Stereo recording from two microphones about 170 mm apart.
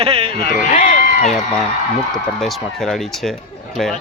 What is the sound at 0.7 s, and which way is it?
Run, 35° left (ahead or behind).